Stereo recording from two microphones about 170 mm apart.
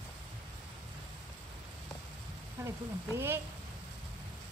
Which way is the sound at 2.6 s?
15° right (ahead or behind).